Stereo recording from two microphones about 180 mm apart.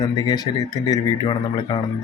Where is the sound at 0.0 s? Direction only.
20° left (ahead or behind).